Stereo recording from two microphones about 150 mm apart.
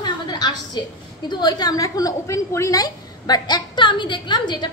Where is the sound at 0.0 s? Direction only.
30° left (ahead or behind).